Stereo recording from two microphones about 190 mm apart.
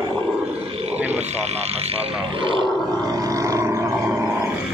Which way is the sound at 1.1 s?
35° right (ahead or behind).